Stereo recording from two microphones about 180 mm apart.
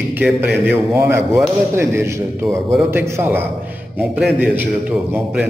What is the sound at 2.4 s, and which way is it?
Mantra, 5° left (ahead or behind).